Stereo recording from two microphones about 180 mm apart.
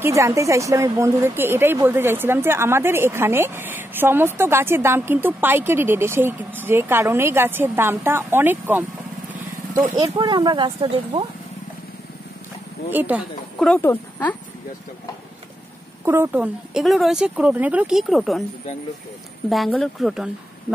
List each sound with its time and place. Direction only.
0.0 s a woman's voice: 15° right (ahead or behind)
9.9 s speech: 25° right (ahead or behind)
12.9 s a woman's voice: 10° right (ahead or behind)
13.6 s speech: 10° left (ahead or behind)
16.1 s speech: 10° right (ahead or behind)
19.5 s speech: centre (ahead or behind)